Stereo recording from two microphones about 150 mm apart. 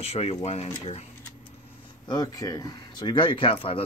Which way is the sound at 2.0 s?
25° left (ahead or behind).